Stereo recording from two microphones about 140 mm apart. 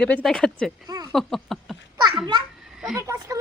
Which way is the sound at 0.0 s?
5° left (ahead or behind).